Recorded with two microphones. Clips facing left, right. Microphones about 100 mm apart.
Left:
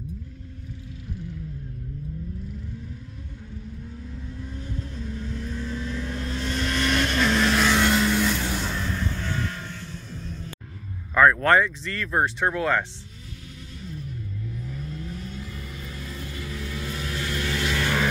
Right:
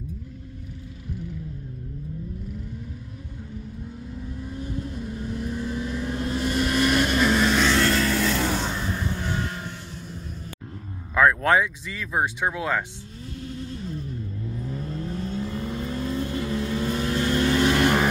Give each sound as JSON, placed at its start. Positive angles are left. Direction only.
{"t": 4.5, "sound": "vehicle", "side_deg": -10}
{"t": 8.5, "sound": "a sound", "side_deg": -15}
{"t": 11.1, "sound": "speech", "side_deg": -5}
{"t": 13.6, "sound": "vehicle", "side_deg": -40}